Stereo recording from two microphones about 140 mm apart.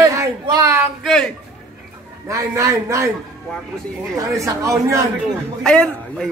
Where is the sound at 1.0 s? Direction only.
5° left (ahead or behind).